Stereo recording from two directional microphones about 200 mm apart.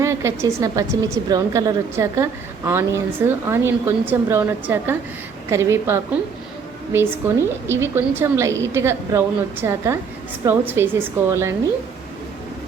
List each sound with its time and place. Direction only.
0.0 s speech: 15° right (ahead or behind)